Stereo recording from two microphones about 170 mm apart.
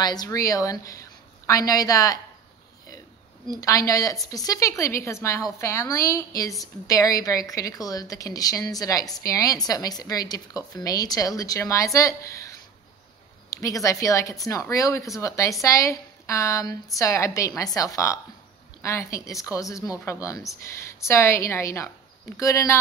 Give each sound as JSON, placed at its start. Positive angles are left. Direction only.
{"t": 0.0, "sound": "a woman's voice", "side_deg": 25}
{"t": 3.4, "sound": "a woman's voice", "side_deg": 20}